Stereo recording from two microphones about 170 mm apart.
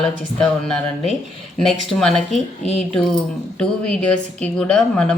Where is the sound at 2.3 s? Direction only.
40° left (ahead or behind).